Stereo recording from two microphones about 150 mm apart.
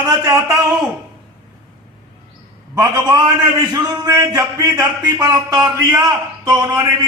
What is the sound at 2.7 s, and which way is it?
A man's voice, 25° right (ahead or behind).